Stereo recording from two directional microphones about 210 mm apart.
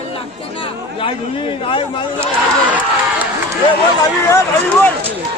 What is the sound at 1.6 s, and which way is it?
Speech, 25° left (ahead or behind).